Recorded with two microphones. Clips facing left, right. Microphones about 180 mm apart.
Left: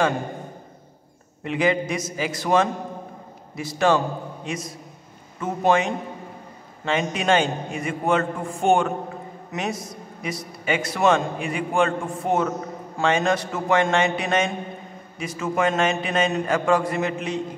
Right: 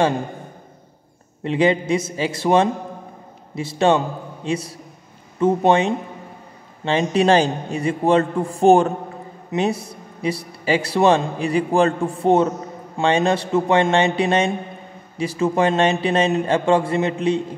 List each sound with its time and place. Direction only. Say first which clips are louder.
1.4 s a man's voice: right 4 dB; 30° right (ahead or behind)